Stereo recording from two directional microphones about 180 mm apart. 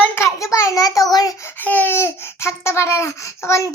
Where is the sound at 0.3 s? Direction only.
15° left (ahead or behind).